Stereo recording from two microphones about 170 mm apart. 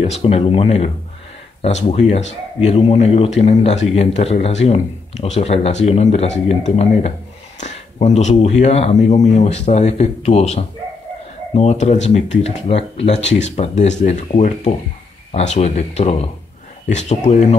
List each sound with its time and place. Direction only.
0.0 s speech: 35° left (ahead or behind)